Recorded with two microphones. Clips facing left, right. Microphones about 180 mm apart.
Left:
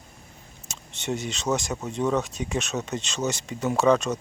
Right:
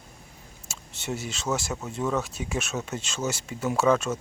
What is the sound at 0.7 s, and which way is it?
Speech, 5° right (ahead or behind).